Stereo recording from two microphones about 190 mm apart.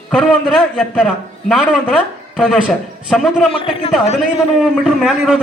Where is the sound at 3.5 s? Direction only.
30° left (ahead or behind).